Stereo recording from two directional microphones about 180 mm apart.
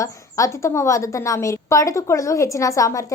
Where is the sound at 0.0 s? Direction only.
15° left (ahead or behind).